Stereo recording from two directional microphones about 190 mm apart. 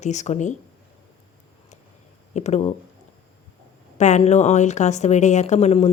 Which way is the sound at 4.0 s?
40° left (ahead or behind).